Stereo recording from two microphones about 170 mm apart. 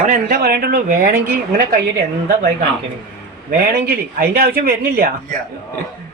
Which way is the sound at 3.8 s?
60° right (ahead or behind).